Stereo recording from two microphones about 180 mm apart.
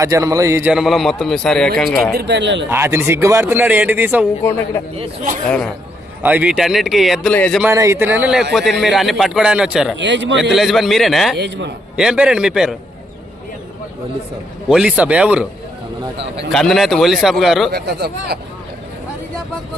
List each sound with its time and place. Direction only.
0.0 s a man's voice: 20° right (ahead or behind); by 2.1 s 5° left (ahead or behind)
2.1 s speech: 70° right (ahead or behind)
2.6 s speech: 15° right (ahead or behind)
5.5 s a man's voice: 5° left (ahead or behind)
6.2 s a man's voice: 10° right (ahead or behind)
7.6 s a man's voice: 15° right (ahead or behind)
10.0 s speech: 90° right
10.5 s a man's voice: centre (ahead or behind)
11.3 s speech: 75° right (ahead or behind)
11.9 s a man's voice: 5° right (ahead or behind)
14.7 s speech: 5° right (ahead or behind)
16.5 s a man's voice: centre (ahead or behind)
17.7 s speech: 60° right (ahead or behind)